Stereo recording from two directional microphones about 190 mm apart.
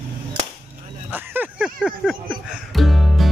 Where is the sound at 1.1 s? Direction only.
10° right (ahead or behind).